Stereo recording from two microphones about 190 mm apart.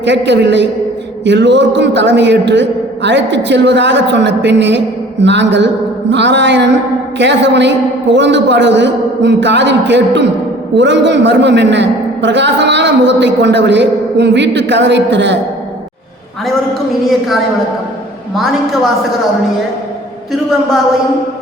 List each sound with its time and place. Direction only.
0.0 s a man's voice: 70° right (ahead or behind)
18.3 s a woman's voice: centre (ahead or behind)